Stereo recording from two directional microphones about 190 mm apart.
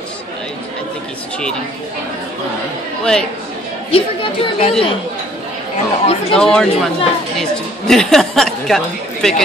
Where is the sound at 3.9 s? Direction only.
30° left (ahead or behind).